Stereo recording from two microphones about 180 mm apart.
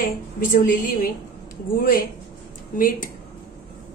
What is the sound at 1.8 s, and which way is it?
A woman's voice, 55° left (ahead or behind).